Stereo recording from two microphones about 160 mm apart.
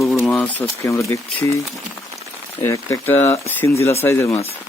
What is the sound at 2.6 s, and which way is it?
Speech, 20° left (ahead or behind).